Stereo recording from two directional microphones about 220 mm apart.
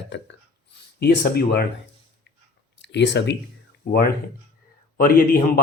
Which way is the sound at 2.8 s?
55° left (ahead or behind).